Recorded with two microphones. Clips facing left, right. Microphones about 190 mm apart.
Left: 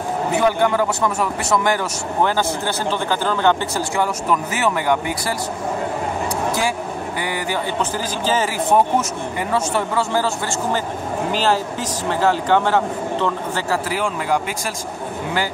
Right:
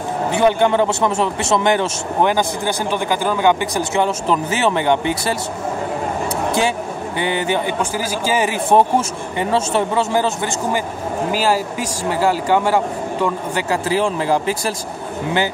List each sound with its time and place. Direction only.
0.3 s a man's voice: 25° right (ahead or behind)
7.2 s a man's voice: 25° right (ahead or behind)
8.7 s a man's voice: 30° right (ahead or behind)